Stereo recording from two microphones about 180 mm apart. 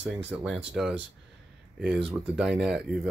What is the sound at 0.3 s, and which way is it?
Speech, 5° right (ahead or behind).